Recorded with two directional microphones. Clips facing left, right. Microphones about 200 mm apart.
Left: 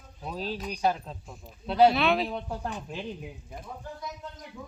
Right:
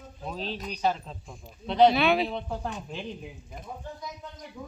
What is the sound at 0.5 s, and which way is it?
A woman's voice, 5° left (ahead or behind).